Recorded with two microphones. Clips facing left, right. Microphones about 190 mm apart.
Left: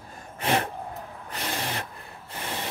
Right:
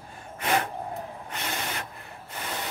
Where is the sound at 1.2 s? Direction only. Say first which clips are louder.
Left 4 dB; 35° left (ahead or behind).